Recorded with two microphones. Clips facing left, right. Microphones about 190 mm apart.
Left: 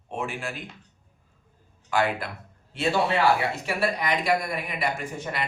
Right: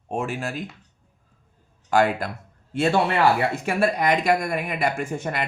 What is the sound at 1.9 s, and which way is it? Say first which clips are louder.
A man's voice: right 5 dB; 45° right (ahead or behind).